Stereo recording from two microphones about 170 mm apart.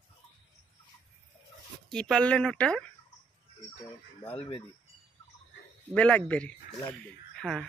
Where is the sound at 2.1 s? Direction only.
5° left (ahead or behind).